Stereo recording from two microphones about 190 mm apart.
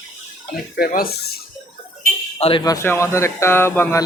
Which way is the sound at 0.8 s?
50° left (ahead or behind).